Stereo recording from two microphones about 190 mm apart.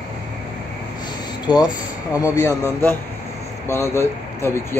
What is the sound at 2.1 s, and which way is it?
Speech, 15° left (ahead or behind).